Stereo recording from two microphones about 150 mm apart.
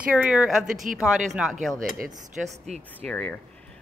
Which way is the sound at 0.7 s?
60° right (ahead or behind).